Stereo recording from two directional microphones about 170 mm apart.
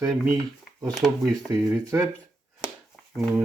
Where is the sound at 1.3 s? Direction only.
20° right (ahead or behind).